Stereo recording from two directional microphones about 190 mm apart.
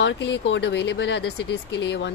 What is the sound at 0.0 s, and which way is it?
Speech, 70° left (ahead or behind).